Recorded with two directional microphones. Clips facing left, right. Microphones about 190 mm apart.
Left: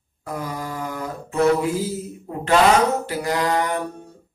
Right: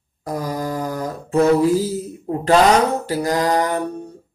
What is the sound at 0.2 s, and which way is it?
Mantra, 40° right (ahead or behind).